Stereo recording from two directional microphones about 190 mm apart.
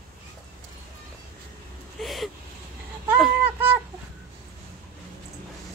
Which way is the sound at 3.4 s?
10° right (ahead or behind).